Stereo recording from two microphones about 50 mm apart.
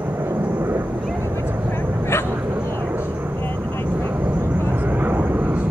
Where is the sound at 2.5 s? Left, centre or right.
Right.